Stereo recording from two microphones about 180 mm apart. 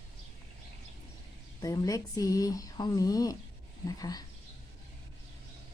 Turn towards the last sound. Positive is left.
turn(degrees=20)  # may be behind; listen again after turning